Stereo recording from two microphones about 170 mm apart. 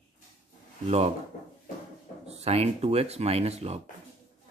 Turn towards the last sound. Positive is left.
turn(degrees=-40)  # may be behind; listen again after turning